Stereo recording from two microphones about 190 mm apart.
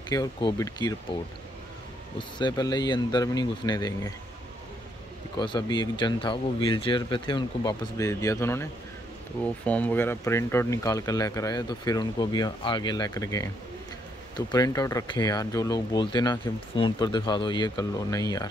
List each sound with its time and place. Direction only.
0.1 s speech: 20° left (ahead or behind)
2.1 s speech: 25° left (ahead or behind)
5.4 s speech: 25° left (ahead or behind)
9.7 s speech: 10° left (ahead or behind)